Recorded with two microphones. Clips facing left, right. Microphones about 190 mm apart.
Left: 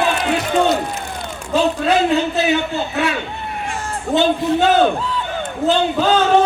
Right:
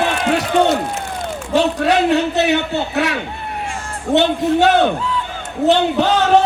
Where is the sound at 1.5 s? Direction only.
70° right (ahead or behind).